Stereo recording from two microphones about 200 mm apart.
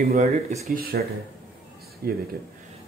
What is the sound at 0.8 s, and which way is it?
Speech, 50° right (ahead or behind).